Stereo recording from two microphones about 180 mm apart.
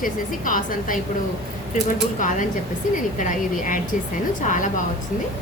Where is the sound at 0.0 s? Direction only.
50° left (ahead or behind).